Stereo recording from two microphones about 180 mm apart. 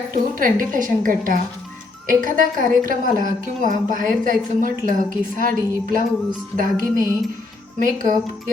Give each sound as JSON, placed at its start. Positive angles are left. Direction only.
{"t": 0.1, "sound": "a woman's voice", "side_deg": -50}